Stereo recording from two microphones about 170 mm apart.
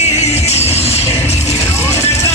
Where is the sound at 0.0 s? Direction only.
40° left (ahead or behind).